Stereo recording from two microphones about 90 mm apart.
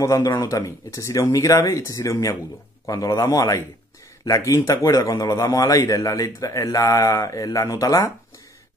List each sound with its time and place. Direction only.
0.0 s a man's voice: 35° left (ahead or behind)